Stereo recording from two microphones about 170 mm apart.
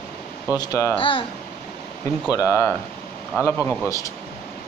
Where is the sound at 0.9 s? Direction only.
30° left (ahead or behind).